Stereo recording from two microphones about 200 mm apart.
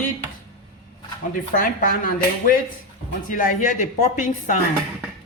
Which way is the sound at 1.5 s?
40° left (ahead or behind).